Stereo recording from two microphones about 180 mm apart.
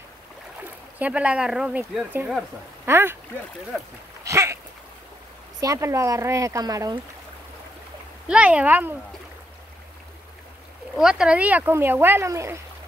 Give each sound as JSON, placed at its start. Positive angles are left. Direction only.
{"t": 0.6, "sound": "speech", "side_deg": -10}
{"t": 4.2, "sound": "a sound", "side_deg": -15}
{"t": 5.6, "sound": "speech", "side_deg": -15}
{"t": 8.3, "sound": "speech", "side_deg": -5}
{"t": 11.0, "sound": "speech", "side_deg": -5}